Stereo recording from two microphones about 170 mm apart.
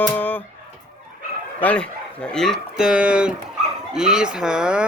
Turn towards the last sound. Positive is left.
turn(degrees=-5)  # may be behind; listen again after turning